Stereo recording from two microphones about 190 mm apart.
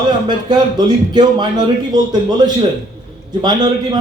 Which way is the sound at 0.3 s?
20° right (ahead or behind).